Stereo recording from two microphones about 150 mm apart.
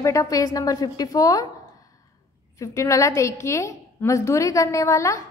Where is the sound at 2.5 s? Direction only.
20° left (ahead or behind).